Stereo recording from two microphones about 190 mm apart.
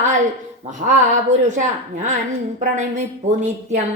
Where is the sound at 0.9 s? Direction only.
40° right (ahead or behind).